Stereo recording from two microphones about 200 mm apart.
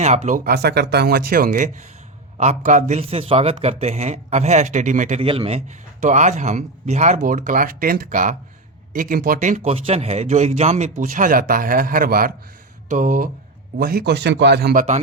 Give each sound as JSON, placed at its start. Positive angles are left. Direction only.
{"t": 0.0, "sound": "speech", "side_deg": -35}
{"t": 5.2, "sound": "a man's voice", "side_deg": -25}